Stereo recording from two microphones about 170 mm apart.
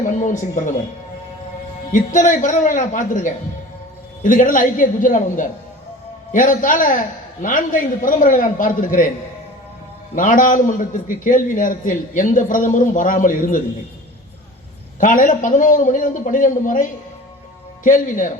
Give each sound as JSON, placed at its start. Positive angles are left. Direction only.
{"t": 0.0, "sound": "a man's voice", "side_deg": 45}
{"t": 1.9, "sound": "a man's voice", "side_deg": 50}
{"t": 10.2, "sound": "a man's voice", "side_deg": 50}
{"t": 15.0, "sound": "a man's voice", "side_deg": 50}
{"t": 17.8, "sound": "a man's voice", "side_deg": 50}